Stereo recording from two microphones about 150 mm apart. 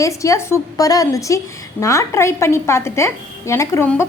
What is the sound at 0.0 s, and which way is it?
A woman's voice, 20° left (ahead or behind).